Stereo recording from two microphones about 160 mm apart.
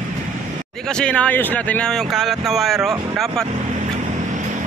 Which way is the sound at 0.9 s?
5° left (ahead or behind).